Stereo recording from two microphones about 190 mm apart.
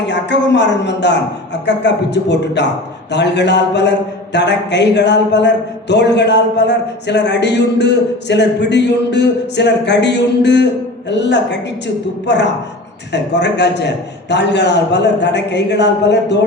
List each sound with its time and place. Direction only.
0.1 s speech: 65° left (ahead or behind)